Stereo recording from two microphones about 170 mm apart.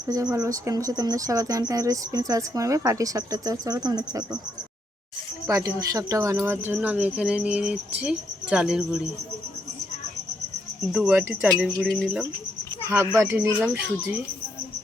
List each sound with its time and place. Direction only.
0.1 s speech: 20° right (ahead or behind)
5.5 s speech: 20° right (ahead or behind); by 9.0 s 5° right (ahead or behind)
10.9 s speech: 5° right (ahead or behind)
11.9 s speech: 5° left (ahead or behind)
13.1 s speech: 15° right (ahead or behind)